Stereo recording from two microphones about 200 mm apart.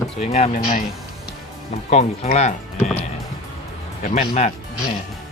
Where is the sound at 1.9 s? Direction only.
35° left (ahead or behind).